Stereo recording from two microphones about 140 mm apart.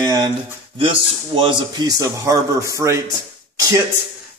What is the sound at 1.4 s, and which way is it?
A man's voice, 35° right (ahead or behind).